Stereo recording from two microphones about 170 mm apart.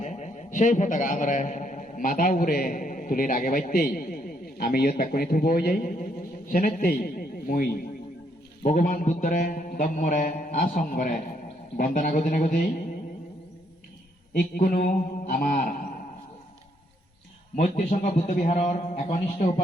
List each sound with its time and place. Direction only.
0.0 s a man's voice: 45° left (ahead or behind); by 7.8 s 60° left (ahead or behind)
8.6 s mantra: 50° left (ahead or behind)
14.3 s mantra: 60° left (ahead or behind)
17.5 s mantra: 45° left (ahead or behind)